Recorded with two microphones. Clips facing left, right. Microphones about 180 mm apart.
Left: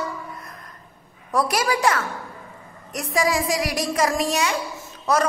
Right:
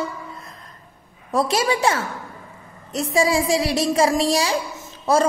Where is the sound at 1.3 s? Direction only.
25° right (ahead or behind).